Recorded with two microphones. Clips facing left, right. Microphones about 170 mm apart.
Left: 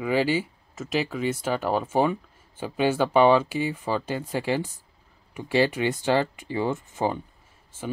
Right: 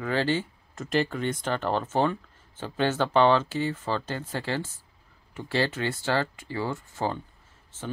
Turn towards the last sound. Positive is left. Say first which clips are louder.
# left 3 dB
turn(degrees=10)  # may be behind; listen again after turning